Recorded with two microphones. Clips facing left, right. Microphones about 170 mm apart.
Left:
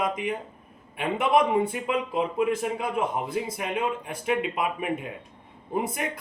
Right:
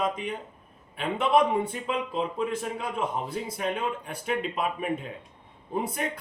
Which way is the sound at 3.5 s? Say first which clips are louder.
Left 1 dB; 10° left (ahead or behind).